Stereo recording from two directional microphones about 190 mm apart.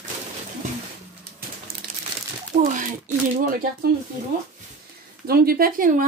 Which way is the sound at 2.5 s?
40° right (ahead or behind).